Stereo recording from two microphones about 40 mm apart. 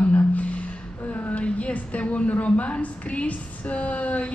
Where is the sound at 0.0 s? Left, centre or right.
Left.